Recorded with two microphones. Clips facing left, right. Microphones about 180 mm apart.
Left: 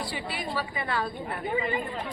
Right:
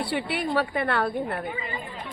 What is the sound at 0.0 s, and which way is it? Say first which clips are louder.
A woman's voice: right 6 dB; 65° right (ahead or behind).